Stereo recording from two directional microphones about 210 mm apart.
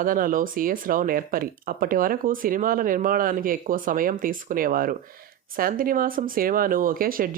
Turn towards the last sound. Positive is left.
turn(degrees=-45)  # may be behind; listen again after turning